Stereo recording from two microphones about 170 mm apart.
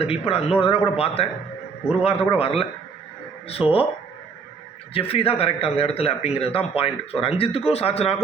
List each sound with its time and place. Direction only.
0.0 s speech: 35° left (ahead or behind)
4.9 s speech: 35° left (ahead or behind)